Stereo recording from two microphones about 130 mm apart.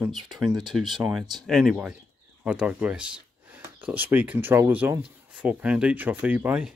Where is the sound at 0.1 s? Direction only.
Centre (ahead or behind).